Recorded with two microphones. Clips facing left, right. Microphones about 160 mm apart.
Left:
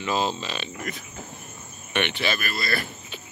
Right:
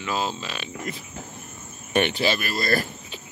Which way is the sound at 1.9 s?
35° right (ahead or behind).